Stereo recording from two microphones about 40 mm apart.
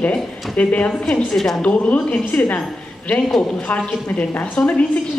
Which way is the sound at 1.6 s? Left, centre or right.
Left.